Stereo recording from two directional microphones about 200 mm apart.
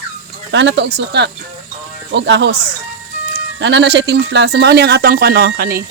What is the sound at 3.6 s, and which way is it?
Speech, 60° right (ahead or behind).